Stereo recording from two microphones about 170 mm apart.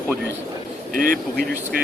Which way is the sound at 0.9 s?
55° right (ahead or behind).